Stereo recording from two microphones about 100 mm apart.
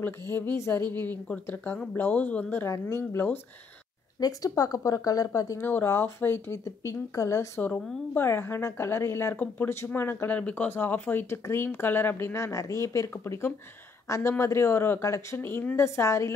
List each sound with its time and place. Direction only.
0.0 s a woman's voice: 20° left (ahead or behind)
4.2 s speech: 40° left (ahead or behind)
5.7 s a woman's voice: 20° left (ahead or behind)
7.6 s a woman's voice: 15° left (ahead or behind)